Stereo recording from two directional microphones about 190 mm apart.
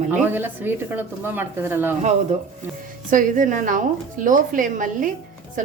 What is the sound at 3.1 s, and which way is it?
A woman's voice, 45° right (ahead or behind).